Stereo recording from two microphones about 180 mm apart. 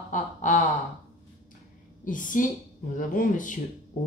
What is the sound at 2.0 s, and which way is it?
Speech, 45° left (ahead or behind).